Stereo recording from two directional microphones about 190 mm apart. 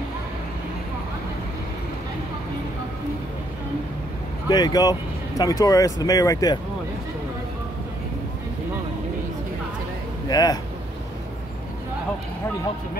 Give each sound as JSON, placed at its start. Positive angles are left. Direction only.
{"t": 4.5, "sound": "speech", "side_deg": 20}
{"t": 10.2, "sound": "speech", "side_deg": 20}